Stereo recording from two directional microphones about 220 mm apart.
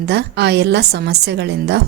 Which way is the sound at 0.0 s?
50° right (ahead or behind).